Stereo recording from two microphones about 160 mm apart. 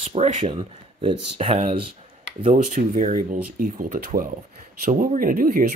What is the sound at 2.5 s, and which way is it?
Speech, 50° right (ahead or behind).